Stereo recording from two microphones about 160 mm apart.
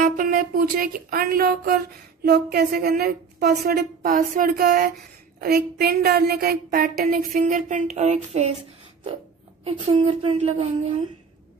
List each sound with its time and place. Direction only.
0.0 s a sound: 60° right (ahead or behind)
2.2 s a woman's voice: 70° right (ahead or behind); by 8.5 s 45° right (ahead or behind)
9.8 s speech: 35° right (ahead or behind)